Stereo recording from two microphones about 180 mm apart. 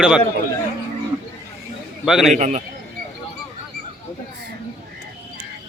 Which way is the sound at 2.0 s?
Centre (ahead or behind).